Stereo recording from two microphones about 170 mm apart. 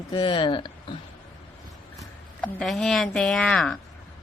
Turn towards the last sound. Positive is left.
turn(degrees=5)  # may be behind; listen again after turning